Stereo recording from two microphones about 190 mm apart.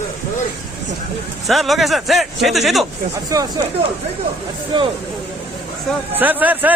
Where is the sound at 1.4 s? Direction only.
Centre (ahead or behind).